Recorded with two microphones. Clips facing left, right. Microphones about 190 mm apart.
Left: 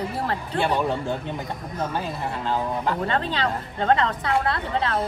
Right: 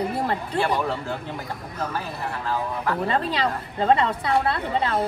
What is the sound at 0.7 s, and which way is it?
Speech, 25° left (ahead or behind).